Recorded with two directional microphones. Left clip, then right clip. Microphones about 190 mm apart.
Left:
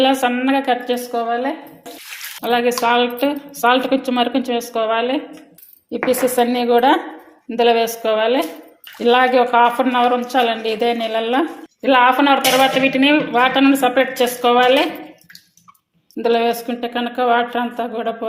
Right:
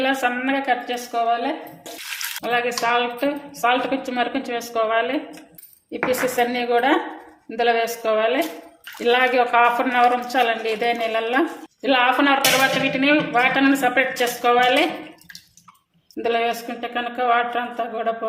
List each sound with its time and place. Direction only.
0.0 s speech: 40° left (ahead or behind)
2.4 s speech: 45° left (ahead or behind)
16.2 s speech: 40° left (ahead or behind)